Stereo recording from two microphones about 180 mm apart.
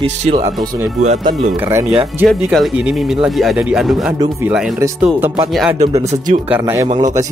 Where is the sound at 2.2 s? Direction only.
Centre (ahead or behind).